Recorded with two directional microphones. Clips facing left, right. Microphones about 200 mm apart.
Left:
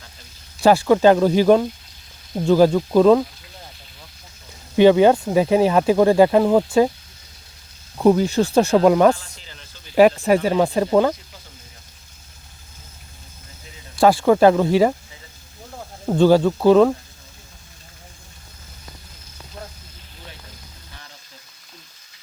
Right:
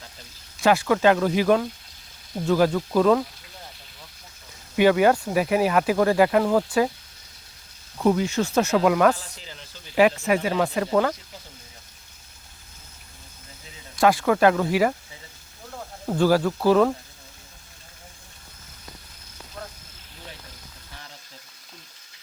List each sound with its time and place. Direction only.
0.6 s speech: 30° left (ahead or behind)
4.8 s speech: 25° left (ahead or behind)
7.9 s speech: 35° left (ahead or behind)
13.9 s speech: 30° left (ahead or behind)
16.0 s speech: 25° left (ahead or behind)